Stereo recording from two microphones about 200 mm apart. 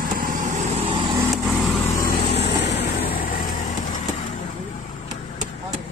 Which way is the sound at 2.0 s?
50° left (ahead or behind).